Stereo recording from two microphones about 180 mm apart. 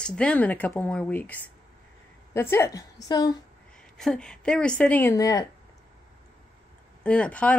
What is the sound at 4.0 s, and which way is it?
A woman's voice, 5° left (ahead or behind).